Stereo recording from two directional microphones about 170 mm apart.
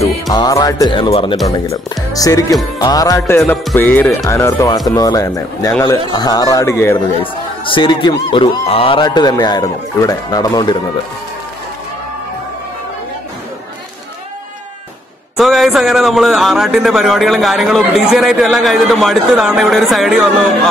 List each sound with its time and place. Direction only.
0.3 s speech: 20° left (ahead or behind)
2.8 s music: 20° left (ahead or behind)
4.3 s speech: 15° left (ahead or behind)
7.2 s speech: 30° left (ahead or behind)
15.3 s a man's voice: centre (ahead or behind)